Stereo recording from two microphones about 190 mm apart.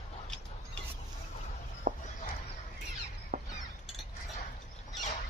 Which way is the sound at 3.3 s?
40° right (ahead or behind).